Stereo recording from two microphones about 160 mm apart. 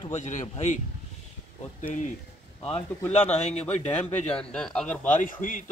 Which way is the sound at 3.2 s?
45° left (ahead or behind).